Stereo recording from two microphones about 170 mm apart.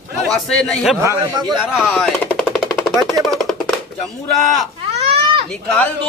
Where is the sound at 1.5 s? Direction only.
Centre (ahead or behind).